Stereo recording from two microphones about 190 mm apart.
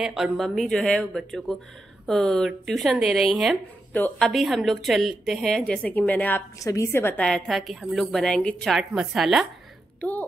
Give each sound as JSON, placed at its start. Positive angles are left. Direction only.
{"t": 0.0, "sound": "a woman's voice", "side_deg": 0}
{"t": 3.9, "sound": "a woman's voice", "side_deg": 10}